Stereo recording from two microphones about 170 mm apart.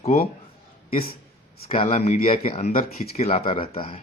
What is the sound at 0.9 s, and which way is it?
Speech, 60° left (ahead or behind).